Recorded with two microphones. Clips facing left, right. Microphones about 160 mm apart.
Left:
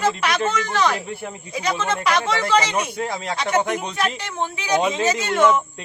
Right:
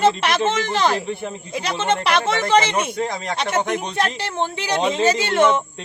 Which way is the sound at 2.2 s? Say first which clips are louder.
Right 2 dB; 20° right (ahead or behind).